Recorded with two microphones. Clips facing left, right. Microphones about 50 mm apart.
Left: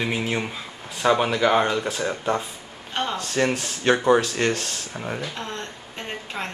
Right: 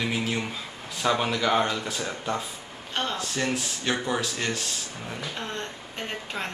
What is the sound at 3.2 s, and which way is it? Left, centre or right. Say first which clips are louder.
Speech: left 5 dB; left.